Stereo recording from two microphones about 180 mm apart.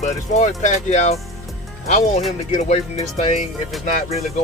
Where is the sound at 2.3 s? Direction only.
35° left (ahead or behind).